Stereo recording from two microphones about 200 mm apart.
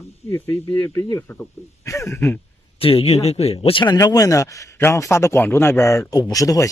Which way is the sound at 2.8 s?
30° left (ahead or behind).